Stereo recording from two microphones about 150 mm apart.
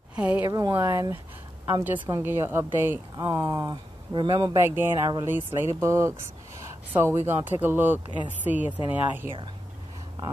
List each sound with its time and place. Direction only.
0.1 s speech: 10° right (ahead or behind)
0.5 s a woman's voice: 25° right (ahead or behind)
3.2 s speech: 25° right (ahead or behind)
4.6 s a woman's voice: 15° right (ahead or behind)